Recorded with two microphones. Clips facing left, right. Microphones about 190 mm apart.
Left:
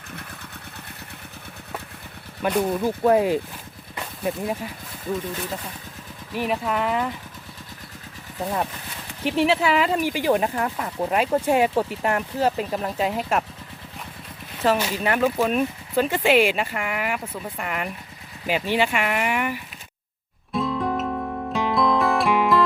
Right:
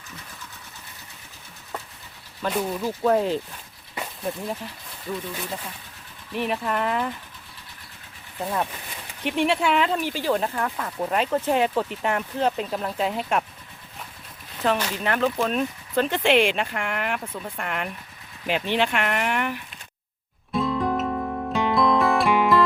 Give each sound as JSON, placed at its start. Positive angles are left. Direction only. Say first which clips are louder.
{"t": 0.1, "sound": "vehicle", "louder": "left 5 dB", "side_deg": 60}
{"t": 2.4, "sound": "speech", "louder": "left 4 dB", "side_deg": 15}
{"t": 6.3, "sound": "speech", "louder": "left 1 dB", "side_deg": 5}
{"t": 9.4, "sound": "speech", "louder": "left 1 dB", "side_deg": 0}
{"t": 14.6, "sound": "speech", "louder": "left 3 dB", "side_deg": 5}
{"t": 20.5, "sound": "music", "louder": "right 1 dB", "side_deg": 0}